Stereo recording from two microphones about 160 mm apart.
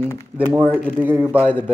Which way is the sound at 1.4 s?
15° left (ahead or behind).